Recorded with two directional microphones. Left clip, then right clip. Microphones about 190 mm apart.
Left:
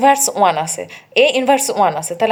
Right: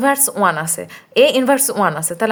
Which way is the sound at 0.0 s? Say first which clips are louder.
Left 3 dB; 40° right (ahead or behind).